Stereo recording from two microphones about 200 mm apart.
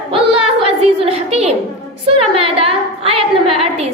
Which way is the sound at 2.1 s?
30° right (ahead or behind).